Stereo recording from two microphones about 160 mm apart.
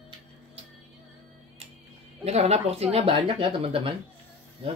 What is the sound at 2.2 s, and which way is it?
Speech, 40° right (ahead or behind).